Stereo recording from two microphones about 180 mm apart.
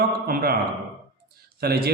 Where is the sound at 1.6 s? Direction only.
60° right (ahead or behind).